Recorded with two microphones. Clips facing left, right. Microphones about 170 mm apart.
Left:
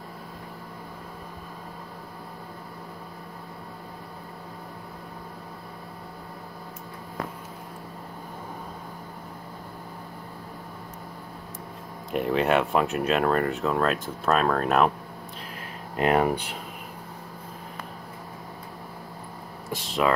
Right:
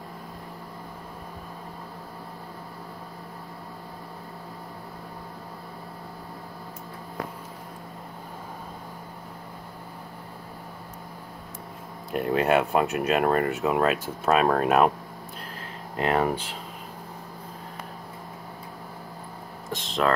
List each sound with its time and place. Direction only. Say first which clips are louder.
12.1 s speech: even; centre (ahead or behind)
16.0 s speech: left 2 dB; 20° left (ahead or behind)
19.7 s a sound: left 1 dB; 5° left (ahead or behind)